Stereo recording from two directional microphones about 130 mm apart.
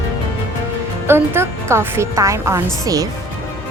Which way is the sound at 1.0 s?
15° right (ahead or behind).